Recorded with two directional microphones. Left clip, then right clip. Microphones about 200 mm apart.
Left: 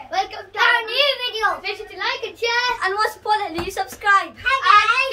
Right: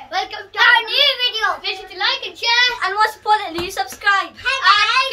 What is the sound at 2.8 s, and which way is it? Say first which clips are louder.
Speech: right 3 dB; 25° left (ahead or behind).